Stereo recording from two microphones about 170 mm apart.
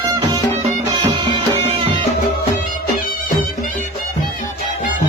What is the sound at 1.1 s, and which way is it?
Music, 30° right (ahead or behind).